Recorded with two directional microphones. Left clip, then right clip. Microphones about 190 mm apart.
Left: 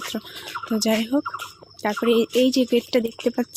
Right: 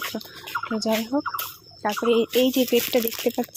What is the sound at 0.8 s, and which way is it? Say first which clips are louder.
Speech: left 3 dB; 40° left (ahead or behind).